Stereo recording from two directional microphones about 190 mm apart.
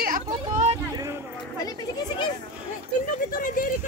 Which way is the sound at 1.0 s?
15° right (ahead or behind).